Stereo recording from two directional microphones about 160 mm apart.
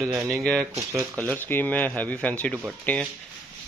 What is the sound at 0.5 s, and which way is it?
Speech, 20° right (ahead or behind).